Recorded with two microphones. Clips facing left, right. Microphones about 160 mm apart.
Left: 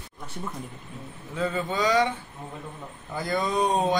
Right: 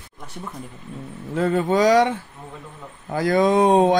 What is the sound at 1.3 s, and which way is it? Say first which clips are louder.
Speech: right 8 dB; 70° right (ahead or behind).